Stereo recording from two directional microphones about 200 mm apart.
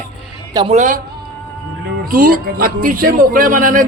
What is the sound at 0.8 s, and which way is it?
Speech, 40° right (ahead or behind).